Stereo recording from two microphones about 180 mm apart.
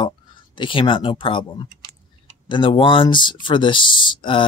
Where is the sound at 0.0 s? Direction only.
25° left (ahead or behind).